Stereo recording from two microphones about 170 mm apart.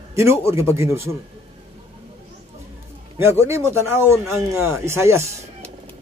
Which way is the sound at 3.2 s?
15° right (ahead or behind).